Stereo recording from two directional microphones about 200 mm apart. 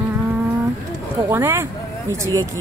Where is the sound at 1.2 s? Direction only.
10° right (ahead or behind).